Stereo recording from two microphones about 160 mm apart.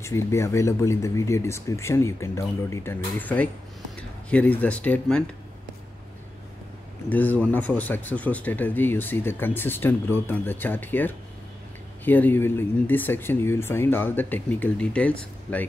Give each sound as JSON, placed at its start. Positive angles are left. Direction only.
{"t": 0.0, "sound": "speech", "side_deg": 15}
{"t": 7.1, "sound": "speech", "side_deg": 10}